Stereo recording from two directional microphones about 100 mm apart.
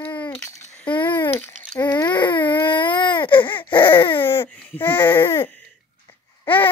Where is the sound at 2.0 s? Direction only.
45° left (ahead or behind).